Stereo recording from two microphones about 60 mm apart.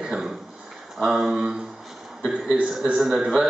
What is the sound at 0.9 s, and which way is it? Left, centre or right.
A man's voice, centre.